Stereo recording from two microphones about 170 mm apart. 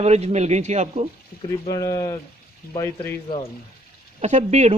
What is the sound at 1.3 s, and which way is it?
Speech, 60° left (ahead or behind).